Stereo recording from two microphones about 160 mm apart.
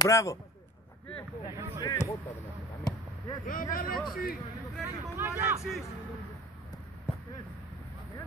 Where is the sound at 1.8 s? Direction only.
25° left (ahead or behind).